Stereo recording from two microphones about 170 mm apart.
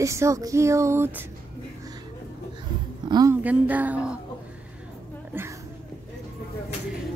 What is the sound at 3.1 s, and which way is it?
Speech, 20° right (ahead or behind).